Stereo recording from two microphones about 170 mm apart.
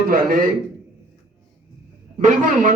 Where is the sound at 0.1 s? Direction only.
60° right (ahead or behind).